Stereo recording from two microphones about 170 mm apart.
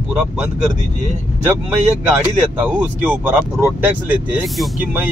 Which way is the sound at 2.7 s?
10° right (ahead or behind).